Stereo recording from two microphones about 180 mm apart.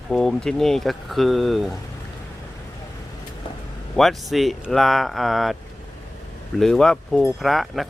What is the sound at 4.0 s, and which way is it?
Speech, centre (ahead or behind).